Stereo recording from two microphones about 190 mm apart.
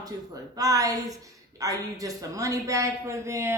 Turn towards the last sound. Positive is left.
turn(degrees=-15)  # may be behind; listen again after turning